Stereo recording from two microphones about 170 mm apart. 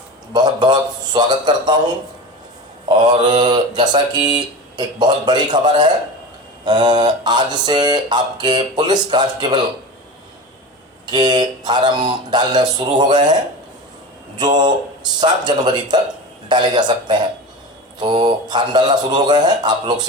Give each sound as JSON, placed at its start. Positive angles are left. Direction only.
{"t": 0.3, "sound": "mantra", "side_deg": -25}
{"t": 3.0, "sound": "mantra", "side_deg": -25}
{"t": 11.0, "sound": "mantra", "side_deg": -25}
{"t": 14.3, "sound": "mantra", "side_deg": -25}